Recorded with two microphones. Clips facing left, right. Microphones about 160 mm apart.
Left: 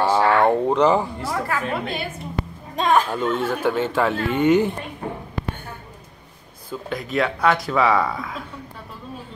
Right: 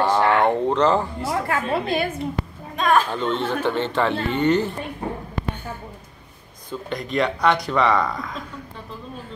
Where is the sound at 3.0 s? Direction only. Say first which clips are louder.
Left 1 dB; 5° left (ahead or behind).